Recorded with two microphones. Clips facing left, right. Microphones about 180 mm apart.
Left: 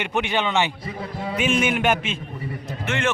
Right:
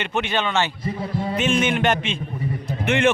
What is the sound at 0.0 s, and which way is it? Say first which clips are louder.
A man's voice: even; 15° left (ahead or behind).